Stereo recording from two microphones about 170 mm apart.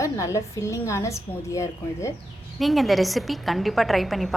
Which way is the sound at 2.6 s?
Centre (ahead or behind).